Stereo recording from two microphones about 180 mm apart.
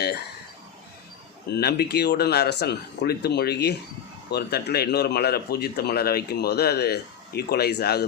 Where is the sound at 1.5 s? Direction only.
65° left (ahead or behind).